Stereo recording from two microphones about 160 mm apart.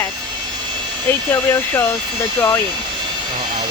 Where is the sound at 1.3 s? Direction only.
15° left (ahead or behind).